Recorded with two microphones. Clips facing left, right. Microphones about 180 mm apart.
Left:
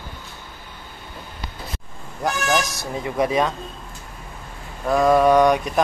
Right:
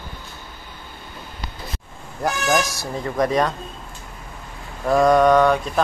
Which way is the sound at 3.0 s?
5° left (ahead or behind).